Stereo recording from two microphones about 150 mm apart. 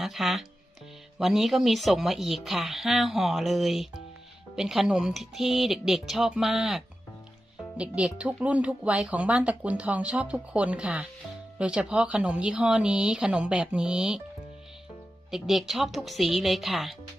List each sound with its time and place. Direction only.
0.0 s speech: centre (ahead or behind)
15.3 s speech: 5° right (ahead or behind)